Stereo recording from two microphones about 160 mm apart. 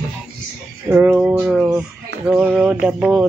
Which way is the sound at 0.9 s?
10° right (ahead or behind).